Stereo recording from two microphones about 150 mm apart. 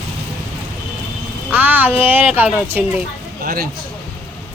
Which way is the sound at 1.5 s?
10° right (ahead or behind).